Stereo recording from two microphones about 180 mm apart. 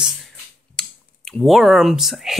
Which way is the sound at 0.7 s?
5° left (ahead or behind).